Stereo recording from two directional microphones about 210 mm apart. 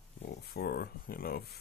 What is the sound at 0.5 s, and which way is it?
Speech, 50° left (ahead or behind).